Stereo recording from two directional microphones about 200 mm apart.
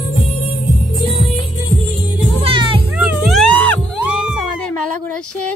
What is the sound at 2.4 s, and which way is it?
Music, 25° right (ahead or behind).